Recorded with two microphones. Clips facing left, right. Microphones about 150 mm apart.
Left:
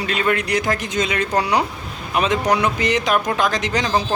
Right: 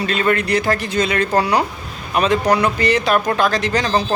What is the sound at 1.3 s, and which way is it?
Speech, centre (ahead or behind).